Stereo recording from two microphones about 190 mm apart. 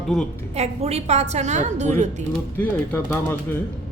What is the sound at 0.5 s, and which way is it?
A woman's voice, 35° right (ahead or behind).